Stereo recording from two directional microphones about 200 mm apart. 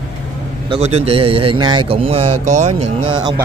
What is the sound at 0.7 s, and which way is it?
Speech, 30° right (ahead or behind).